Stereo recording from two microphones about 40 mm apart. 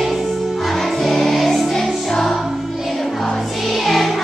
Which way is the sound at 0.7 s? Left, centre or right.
Centre.